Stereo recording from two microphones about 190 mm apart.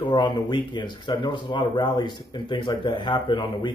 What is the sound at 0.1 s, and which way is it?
Speech, 25° left (ahead or behind).